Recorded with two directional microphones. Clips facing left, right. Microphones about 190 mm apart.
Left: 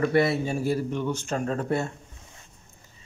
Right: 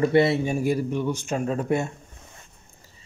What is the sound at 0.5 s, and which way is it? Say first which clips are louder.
Speech: right 2 dB; 15° right (ahead or behind).